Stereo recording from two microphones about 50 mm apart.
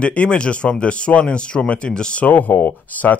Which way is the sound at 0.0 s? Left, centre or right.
Left.